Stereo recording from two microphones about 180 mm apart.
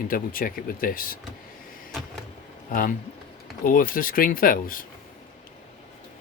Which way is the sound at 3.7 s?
50° left (ahead or behind).